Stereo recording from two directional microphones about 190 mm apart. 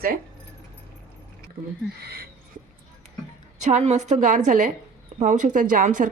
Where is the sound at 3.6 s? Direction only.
40° right (ahead or behind).